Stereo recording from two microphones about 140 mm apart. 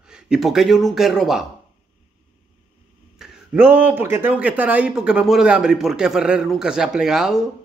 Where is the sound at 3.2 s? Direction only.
5° right (ahead or behind).